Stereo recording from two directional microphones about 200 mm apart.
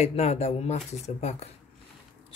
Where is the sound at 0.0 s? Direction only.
35° left (ahead or behind).